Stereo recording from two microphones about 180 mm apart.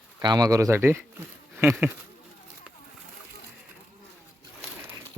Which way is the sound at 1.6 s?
15° right (ahead or behind).